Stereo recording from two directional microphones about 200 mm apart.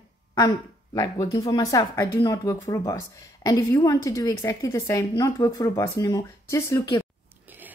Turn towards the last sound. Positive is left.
turn(degrees=15)  # may be behind; listen again after turning